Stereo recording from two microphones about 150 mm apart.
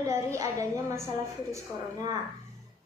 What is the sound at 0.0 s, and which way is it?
A woman's voice, 20° right (ahead or behind).